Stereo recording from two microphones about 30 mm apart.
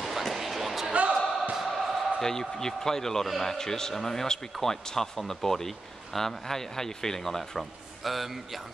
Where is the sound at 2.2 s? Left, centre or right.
Centre.